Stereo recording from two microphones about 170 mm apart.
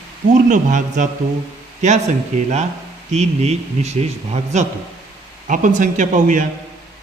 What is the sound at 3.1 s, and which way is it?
A man's voice, 40° right (ahead or behind).